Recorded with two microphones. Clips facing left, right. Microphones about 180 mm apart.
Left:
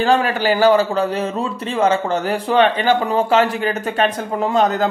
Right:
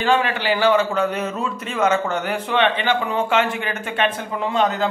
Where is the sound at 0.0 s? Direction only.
40° left (ahead or behind).